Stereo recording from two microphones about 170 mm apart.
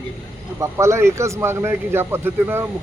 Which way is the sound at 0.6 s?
15° right (ahead or behind).